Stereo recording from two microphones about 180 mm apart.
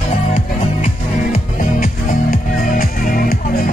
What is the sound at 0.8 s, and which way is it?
Music, 50° left (ahead or behind).